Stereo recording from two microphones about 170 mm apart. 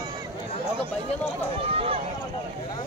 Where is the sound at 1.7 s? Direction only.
35° right (ahead or behind).